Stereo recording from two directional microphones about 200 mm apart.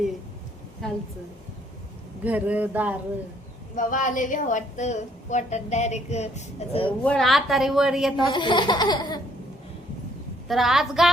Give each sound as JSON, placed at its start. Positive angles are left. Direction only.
{"t": 2.2, "sound": "speech", "side_deg": -10}
{"t": 3.8, "sound": "a woman's voice", "side_deg": 40}
{"t": 7.0, "sound": "a woman's voice", "side_deg": 5}
{"t": 8.3, "sound": "baby laughter", "side_deg": 25}
{"t": 10.5, "sound": "a woman's voice", "side_deg": 0}